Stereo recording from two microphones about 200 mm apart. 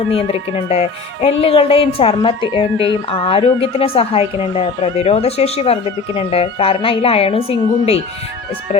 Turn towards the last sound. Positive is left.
turn(degrees=30)  # may be behind; listen again after turning